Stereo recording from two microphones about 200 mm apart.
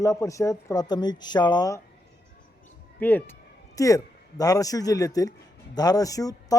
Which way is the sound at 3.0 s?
10° left (ahead or behind).